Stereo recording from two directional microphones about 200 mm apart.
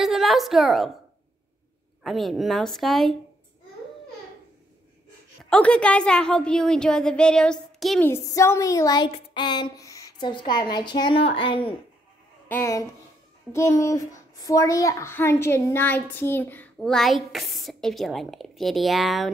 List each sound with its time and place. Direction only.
0.0 s a woman's voice: centre (ahead or behind)
2.0 s a child's voice: centre (ahead or behind)
5.4 s a child's voice: 5° left (ahead or behind)
8.1 s speech: 15° left (ahead or behind)
12.4 s a child's voice: 10° left (ahead or behind)